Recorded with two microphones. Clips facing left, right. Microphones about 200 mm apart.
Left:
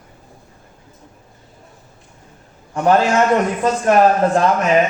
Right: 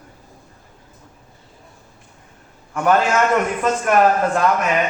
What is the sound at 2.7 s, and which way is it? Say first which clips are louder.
A man's voice: left 2 dB; 30° left (ahead or behind).